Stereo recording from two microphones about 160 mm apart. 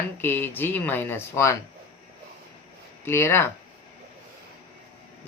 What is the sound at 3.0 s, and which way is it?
Speech, 15° left (ahead or behind).